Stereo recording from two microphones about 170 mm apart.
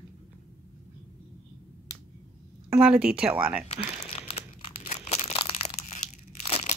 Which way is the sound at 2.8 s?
5° right (ahead or behind).